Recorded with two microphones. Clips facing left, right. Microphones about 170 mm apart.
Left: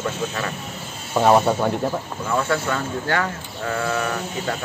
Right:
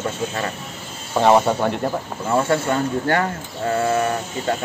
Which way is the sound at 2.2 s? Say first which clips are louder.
Right 4 dB; 30° right (ahead or behind).